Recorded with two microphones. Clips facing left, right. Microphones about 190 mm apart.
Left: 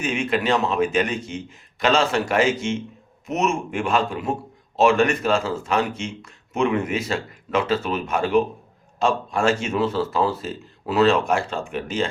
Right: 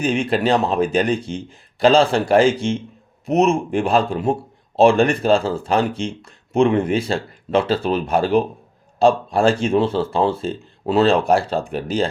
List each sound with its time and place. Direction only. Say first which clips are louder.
0.0 s speech: right 4 dB; 35° right (ahead or behind)